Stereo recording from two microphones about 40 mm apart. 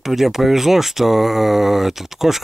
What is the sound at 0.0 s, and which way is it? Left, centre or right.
Speech, centre.